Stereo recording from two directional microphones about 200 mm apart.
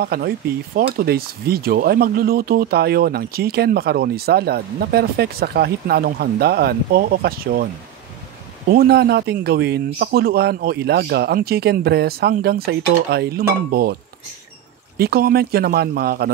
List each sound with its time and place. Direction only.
0.0 s speech: 50° right (ahead or behind)
8.6 s speech: 50° right (ahead or behind)
15.0 s speech: 50° right (ahead or behind)